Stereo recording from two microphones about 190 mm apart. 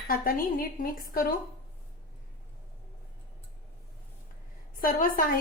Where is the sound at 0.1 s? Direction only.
50° left (ahead or behind).